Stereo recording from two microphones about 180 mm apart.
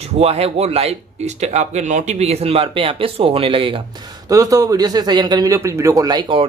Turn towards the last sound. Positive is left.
turn(degrees=-25)  # may be behind; listen again after turning